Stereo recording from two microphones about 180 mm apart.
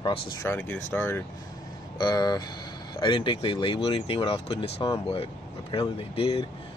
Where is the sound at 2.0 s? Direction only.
25° left (ahead or behind).